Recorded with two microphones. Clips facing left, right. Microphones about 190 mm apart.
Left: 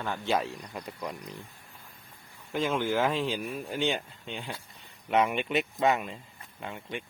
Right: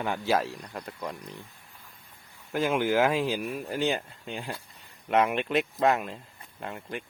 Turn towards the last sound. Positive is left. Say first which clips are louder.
# right 1 dB
turn(degrees=0)  # may be behind; listen again after turning